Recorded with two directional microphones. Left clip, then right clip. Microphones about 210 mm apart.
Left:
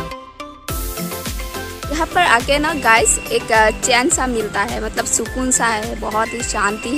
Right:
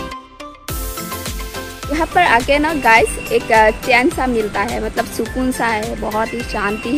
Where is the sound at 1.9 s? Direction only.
10° left (ahead or behind).